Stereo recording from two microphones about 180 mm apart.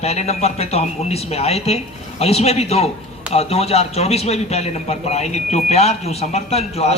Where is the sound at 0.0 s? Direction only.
35° left (ahead or behind).